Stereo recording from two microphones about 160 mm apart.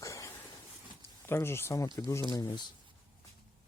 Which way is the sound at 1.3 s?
15° left (ahead or behind).